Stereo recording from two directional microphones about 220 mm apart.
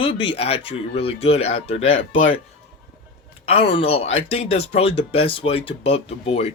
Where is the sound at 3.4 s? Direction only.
25° left (ahead or behind).